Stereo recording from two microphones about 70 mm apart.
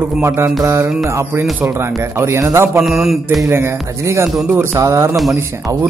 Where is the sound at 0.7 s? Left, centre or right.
Right.